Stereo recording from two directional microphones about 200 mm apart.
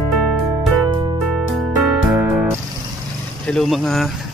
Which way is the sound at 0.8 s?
20° right (ahead or behind).